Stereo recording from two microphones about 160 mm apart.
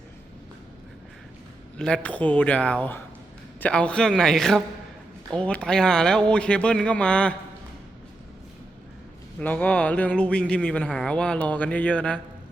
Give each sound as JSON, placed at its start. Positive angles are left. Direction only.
{"t": 1.8, "sound": "speech", "side_deg": 5}
{"t": 9.4, "sound": "speech", "side_deg": 10}